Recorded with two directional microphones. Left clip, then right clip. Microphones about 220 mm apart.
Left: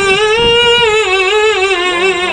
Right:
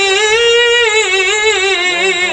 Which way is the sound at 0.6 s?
15° right (ahead or behind).